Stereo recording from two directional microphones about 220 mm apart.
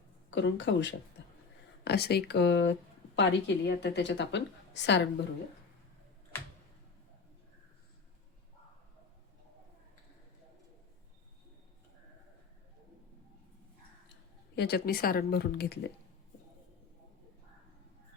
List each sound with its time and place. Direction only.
0.3 s a woman's voice: 55° left (ahead or behind)
14.5 s a woman's voice: 50° left (ahead or behind)